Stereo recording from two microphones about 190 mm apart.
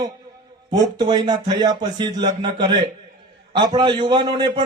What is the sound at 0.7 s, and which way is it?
A man's voice, 20° right (ahead or behind).